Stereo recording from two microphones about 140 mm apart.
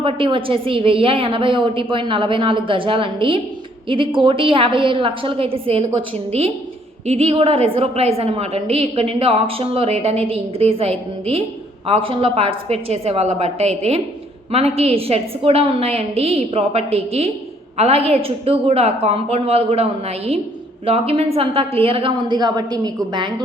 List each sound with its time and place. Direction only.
0.0 s a woman's voice: 40° right (ahead or behind)